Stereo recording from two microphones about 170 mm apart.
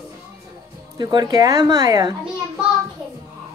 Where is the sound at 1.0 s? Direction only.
25° right (ahead or behind).